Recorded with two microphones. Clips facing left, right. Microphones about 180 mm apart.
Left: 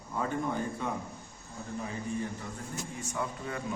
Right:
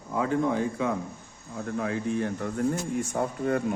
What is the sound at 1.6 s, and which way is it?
Speech, 70° right (ahead or behind).